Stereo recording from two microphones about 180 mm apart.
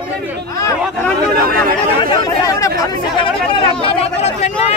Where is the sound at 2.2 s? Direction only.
20° left (ahead or behind).